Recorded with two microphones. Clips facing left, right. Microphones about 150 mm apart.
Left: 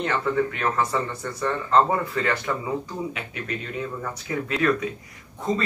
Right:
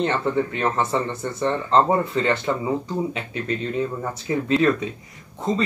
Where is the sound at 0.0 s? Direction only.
30° right (ahead or behind).